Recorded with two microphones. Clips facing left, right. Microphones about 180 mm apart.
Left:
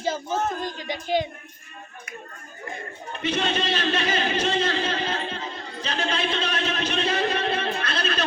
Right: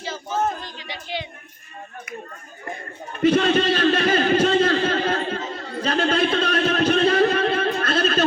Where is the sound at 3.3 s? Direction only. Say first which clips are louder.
Right 4 dB; 55° right (ahead or behind).